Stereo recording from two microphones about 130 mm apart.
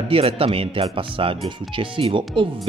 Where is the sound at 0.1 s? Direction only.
50° right (ahead or behind).